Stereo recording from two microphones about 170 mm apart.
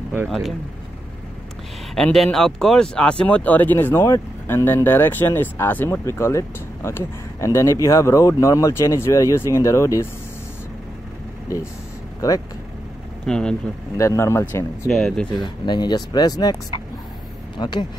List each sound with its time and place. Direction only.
0.3 s speech: centre (ahead or behind)
2.0 s speech: 5° left (ahead or behind)
13.2 s speech: 5° left (ahead or behind)
13.9 s speech: 15° left (ahead or behind)
14.9 s speech: centre (ahead or behind)
15.4 s speech: 25° left (ahead or behind)